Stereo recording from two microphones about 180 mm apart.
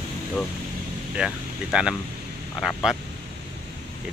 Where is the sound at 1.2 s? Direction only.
5° right (ahead or behind).